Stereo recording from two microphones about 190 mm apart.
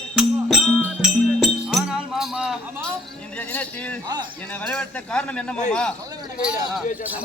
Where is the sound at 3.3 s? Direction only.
5° left (ahead or behind).